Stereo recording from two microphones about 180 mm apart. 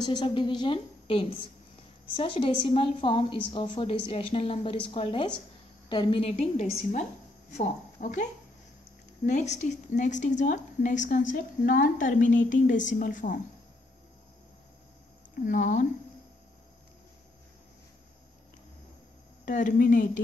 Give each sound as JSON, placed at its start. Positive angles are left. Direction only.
{"t": 0.0, "sound": "a woman's voice", "side_deg": 25}
{"t": 6.3, "sound": "a woman's voice", "side_deg": 40}
{"t": 15.3, "sound": "a woman's voice", "side_deg": 45}
{"t": 19.4, "sound": "a woman's voice", "side_deg": 45}